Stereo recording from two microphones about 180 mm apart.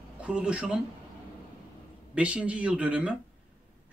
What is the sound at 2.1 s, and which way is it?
Speech, 5° right (ahead or behind).